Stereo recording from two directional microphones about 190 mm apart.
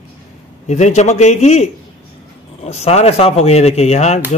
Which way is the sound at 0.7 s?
40° left (ahead or behind).